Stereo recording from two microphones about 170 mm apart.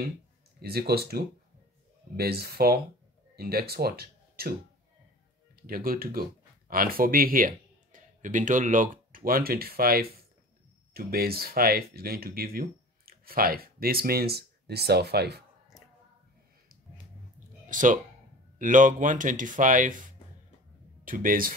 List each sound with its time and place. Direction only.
0.6 s speech: 65° right (ahead or behind)
5.6 s speech: 60° right (ahead or behind)
17.6 s speech: 50° right (ahead or behind)